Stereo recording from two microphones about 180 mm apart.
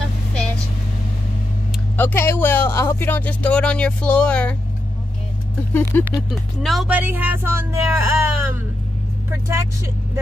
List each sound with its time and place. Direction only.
2.0 s speech: 10° left (ahead or behind)
5.8 s speech: 15° left (ahead or behind)
6.3 s speech: centre (ahead or behind)